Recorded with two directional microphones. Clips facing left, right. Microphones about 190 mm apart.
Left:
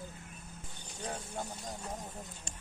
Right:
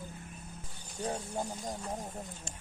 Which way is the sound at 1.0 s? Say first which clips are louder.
Right 5 dB; 25° right (ahead or behind).